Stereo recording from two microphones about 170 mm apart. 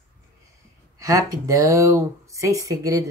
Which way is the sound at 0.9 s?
20° right (ahead or behind).